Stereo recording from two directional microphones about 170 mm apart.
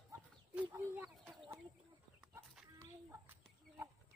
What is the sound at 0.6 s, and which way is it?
Chicken, 15° right (ahead or behind).